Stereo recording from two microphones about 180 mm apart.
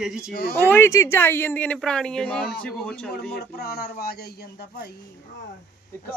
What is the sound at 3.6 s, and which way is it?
Speech, 60° left (ahead or behind).